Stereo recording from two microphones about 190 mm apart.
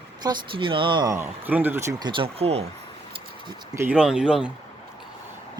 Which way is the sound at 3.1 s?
25° right (ahead or behind).